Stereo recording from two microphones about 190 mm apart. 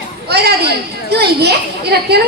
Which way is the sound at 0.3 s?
55° right (ahead or behind).